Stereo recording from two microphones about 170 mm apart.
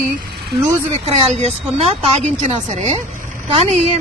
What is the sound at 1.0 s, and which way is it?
Speech, 40° right (ahead or behind).